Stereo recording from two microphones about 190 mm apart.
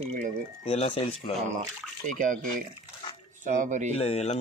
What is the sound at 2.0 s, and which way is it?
Speech, 45° right (ahead or behind).